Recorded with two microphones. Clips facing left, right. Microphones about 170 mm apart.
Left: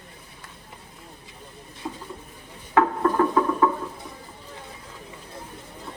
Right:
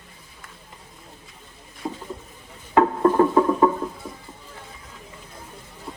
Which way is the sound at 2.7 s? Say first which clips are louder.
Right 3 dB; 25° right (ahead or behind).